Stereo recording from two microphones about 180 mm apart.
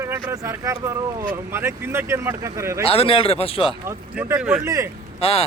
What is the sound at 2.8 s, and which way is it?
Speech, 30° left (ahead or behind).